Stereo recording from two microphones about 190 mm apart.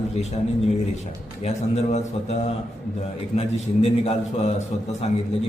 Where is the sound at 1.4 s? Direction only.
35° left (ahead or behind).